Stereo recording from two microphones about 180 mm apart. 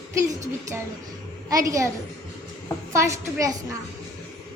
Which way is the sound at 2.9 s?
15° right (ahead or behind).